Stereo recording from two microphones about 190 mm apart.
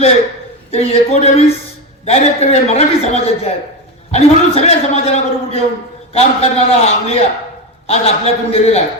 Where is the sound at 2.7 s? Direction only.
35° left (ahead or behind).